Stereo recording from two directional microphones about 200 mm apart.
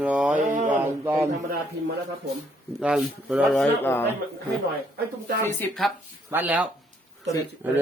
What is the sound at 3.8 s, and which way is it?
Speech, 10° left (ahead or behind).